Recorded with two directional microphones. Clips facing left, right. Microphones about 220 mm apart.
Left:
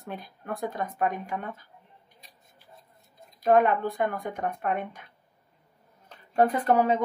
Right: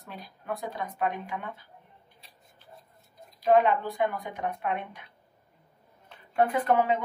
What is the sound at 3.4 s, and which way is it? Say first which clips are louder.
Speech: left 1 dB; 50° left (ahead or behind).